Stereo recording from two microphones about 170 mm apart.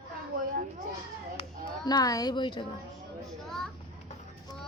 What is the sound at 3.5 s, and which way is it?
Children playing, centre (ahead or behind).